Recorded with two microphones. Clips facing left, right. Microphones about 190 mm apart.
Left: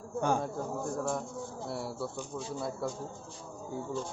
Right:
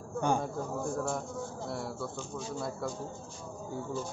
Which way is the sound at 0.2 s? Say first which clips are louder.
Even; 5° left (ahead or behind).